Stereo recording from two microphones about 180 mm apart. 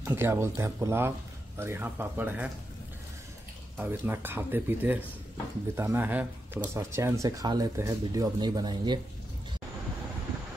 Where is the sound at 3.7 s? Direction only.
10° right (ahead or behind).